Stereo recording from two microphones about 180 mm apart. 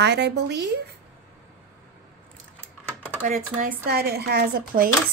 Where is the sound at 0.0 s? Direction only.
75° right (ahead or behind).